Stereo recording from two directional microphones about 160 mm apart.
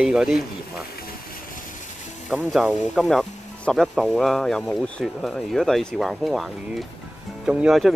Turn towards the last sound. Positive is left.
turn(degrees=-5)  # may be behind; listen again after turning